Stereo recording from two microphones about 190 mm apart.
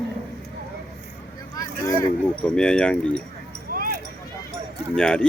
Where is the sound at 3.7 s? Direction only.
50° right (ahead or behind).